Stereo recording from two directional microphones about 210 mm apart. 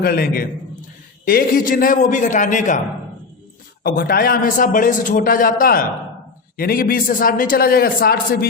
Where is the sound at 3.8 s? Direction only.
45° left (ahead or behind).